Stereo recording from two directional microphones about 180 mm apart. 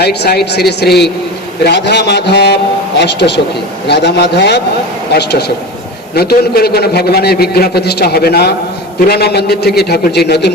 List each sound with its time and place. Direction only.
0.0 s a man's voice: 65° left (ahead or behind)